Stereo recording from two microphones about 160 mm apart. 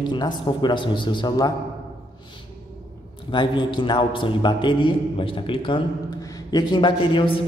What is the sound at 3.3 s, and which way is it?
A man's voice, 30° left (ahead or behind).